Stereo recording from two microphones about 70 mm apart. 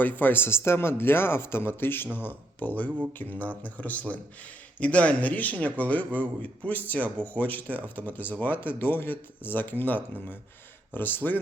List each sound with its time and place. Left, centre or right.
0.0 s a man's voice: left